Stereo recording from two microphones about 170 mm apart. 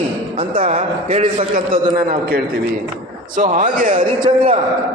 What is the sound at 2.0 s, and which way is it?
A man's voice, 60° right (ahead or behind).